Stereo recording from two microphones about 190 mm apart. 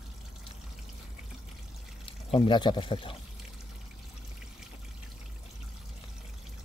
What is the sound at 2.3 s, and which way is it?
Speech, 25° left (ahead or behind).